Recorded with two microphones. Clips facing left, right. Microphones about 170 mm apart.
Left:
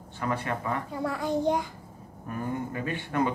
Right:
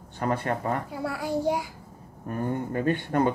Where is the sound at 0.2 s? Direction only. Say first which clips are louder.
Right 3 dB; 40° right (ahead or behind).